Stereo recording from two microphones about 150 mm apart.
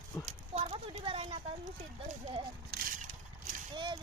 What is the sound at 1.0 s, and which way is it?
Speech, 40° right (ahead or behind).